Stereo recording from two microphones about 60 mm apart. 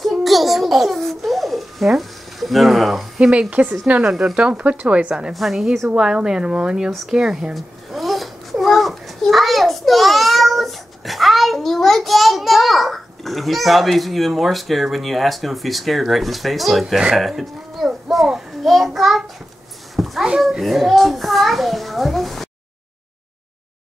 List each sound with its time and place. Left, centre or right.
0.0 s a sound: centre
3.2 s speech: centre
4.1 s speech: centre
5.3 s a child's voice: centre
7.5 s a child's voice: centre
17.1 s a sound: centre
20.0 s a child's voice: centre